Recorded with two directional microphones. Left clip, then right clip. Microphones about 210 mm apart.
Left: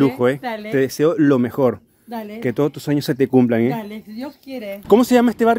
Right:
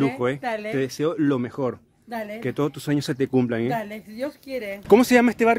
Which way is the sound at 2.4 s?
20° left (ahead or behind).